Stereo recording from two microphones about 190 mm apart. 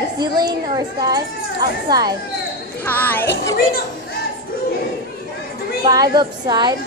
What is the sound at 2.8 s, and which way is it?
Speech, 10° left (ahead or behind).